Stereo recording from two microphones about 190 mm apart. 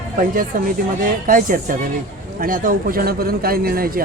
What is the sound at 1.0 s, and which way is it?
A man's voice, 45° right (ahead or behind).